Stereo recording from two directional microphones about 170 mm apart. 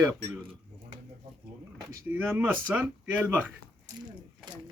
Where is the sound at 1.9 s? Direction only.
10° right (ahead or behind).